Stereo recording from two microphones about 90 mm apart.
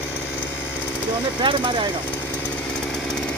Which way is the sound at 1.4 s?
65° right (ahead or behind).